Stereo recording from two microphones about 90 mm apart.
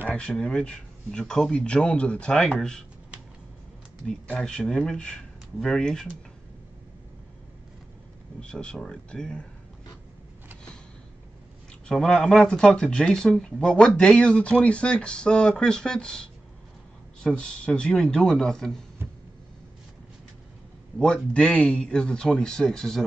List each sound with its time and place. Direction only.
0.4 s speech: 10° left (ahead or behind)
4.3 s speech: 10° left (ahead or behind)
8.4 s speech: 10° left (ahead or behind)
11.9 s speech: 5° left (ahead or behind)
21.0 s speech: 10° left (ahead or behind)